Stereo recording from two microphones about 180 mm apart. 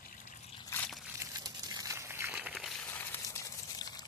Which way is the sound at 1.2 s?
20° right (ahead or behind).